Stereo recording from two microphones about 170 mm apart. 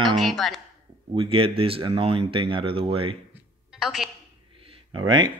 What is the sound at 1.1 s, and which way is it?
Speech, 30° right (ahead or behind).